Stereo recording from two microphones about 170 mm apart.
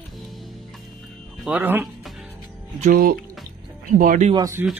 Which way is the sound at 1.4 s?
10° right (ahead or behind).